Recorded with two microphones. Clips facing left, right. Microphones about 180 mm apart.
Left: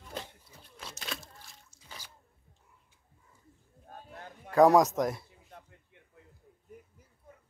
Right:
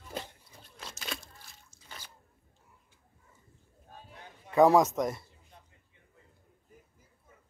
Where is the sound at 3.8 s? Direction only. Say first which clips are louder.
Left 4 dB; 50° left (ahead or behind).